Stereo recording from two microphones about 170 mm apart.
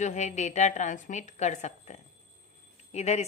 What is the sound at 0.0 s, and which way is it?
A woman's voice, 45° left (ahead or behind).